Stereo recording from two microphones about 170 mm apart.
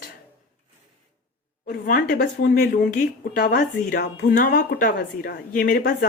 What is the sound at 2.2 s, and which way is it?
Speech, 65° left (ahead or behind).